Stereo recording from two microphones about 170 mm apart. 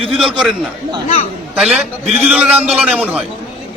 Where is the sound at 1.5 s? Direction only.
5° right (ahead or behind).